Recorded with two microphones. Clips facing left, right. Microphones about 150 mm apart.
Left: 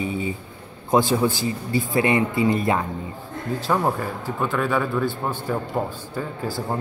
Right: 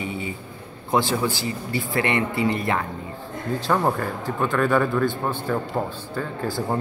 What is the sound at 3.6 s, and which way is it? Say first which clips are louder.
A man's voice: even; 5° left (ahead or behind).